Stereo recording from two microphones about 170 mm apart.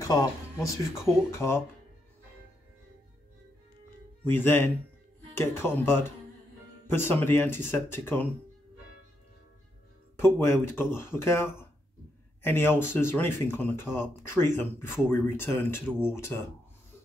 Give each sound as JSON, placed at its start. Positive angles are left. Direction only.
{"t": 0.0, "sound": "speech", "side_deg": 20}
{"t": 4.2, "sound": "speech", "side_deg": 10}
{"t": 10.1, "sound": "speech", "side_deg": 15}